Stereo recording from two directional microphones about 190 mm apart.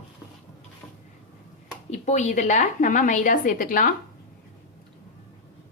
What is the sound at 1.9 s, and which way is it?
A woman's voice, 40° left (ahead or behind).